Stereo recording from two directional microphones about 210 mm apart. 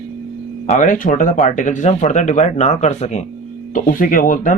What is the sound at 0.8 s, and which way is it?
Speech, 40° left (ahead or behind).